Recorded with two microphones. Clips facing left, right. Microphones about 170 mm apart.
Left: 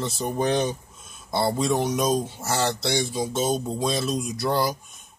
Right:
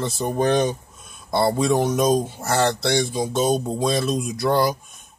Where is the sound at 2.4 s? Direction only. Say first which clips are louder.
Right 4 dB; 55° right (ahead or behind).